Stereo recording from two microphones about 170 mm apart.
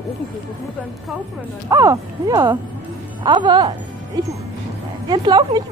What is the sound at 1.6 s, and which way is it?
Speech, 20° right (ahead or behind).